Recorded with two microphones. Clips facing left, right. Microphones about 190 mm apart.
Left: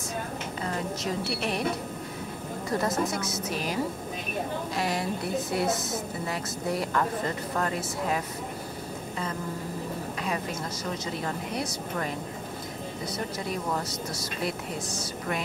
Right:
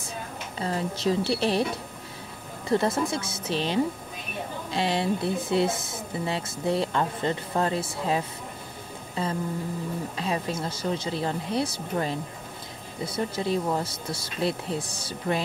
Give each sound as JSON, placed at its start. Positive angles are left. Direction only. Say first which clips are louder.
{"t": 0.6, "sound": "a woman's voice", "louder": "right 4 dB", "side_deg": -30}
{"t": 2.7, "sound": "speech", "louder": "right 4 dB", "side_deg": -30}
{"t": 10.1, "sound": "speech", "louder": "right 3 dB", "side_deg": -30}